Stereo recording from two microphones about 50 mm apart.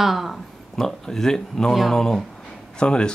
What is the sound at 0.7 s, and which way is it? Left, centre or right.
Speech, centre.